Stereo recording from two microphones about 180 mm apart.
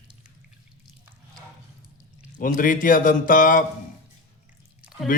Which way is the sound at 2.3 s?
45° left (ahead or behind).